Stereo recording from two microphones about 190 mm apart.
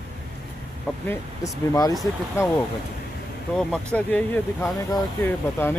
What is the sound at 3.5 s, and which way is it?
Speech, 5° left (ahead or behind).